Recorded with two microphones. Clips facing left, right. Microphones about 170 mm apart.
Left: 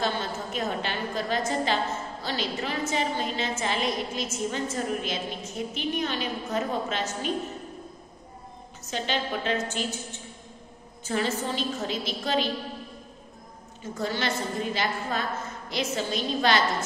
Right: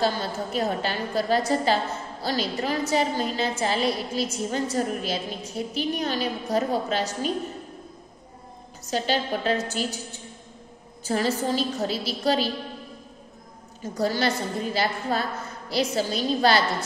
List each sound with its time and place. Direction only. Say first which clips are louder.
0.0 s a woman's voice: right 4 dB; 35° right (ahead or behind)
8.9 s a woman's voice: right 4 dB; 40° right (ahead or behind)
13.9 s a woman's voice: right 5 dB; 40° right (ahead or behind)